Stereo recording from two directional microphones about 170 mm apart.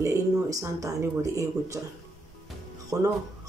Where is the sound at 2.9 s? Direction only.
20° right (ahead or behind).